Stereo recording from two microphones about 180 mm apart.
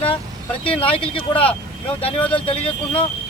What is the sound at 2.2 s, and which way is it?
Speech, 10° left (ahead or behind).